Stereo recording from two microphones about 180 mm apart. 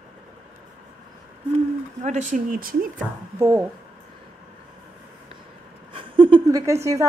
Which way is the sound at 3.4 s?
15° right (ahead or behind).